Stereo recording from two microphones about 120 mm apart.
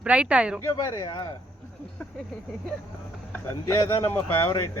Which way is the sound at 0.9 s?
35° left (ahead or behind).